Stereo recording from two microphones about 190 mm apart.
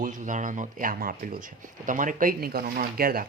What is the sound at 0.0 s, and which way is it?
Speech, 40° right (ahead or behind).